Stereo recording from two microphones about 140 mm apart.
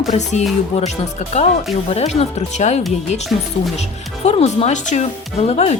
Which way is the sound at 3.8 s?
50° left (ahead or behind).